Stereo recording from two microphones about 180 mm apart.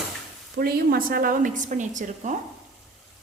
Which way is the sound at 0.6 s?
55° right (ahead or behind).